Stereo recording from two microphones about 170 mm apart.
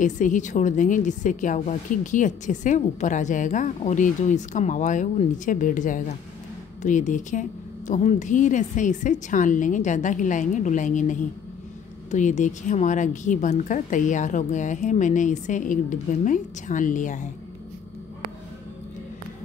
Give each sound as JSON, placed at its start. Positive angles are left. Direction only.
{"t": 0.0, "sound": "a woman's voice", "side_deg": 50}